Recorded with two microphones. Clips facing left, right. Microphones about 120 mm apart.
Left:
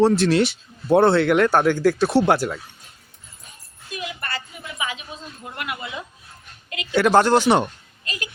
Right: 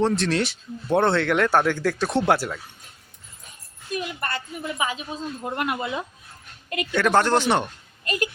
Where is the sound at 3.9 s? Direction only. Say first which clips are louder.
Right 3 dB; 45° right (ahead or behind).